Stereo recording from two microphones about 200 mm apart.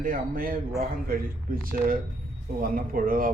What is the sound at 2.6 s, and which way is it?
Speech, 45° right (ahead or behind).